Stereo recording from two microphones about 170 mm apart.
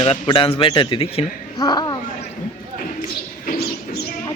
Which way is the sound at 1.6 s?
25° left (ahead or behind).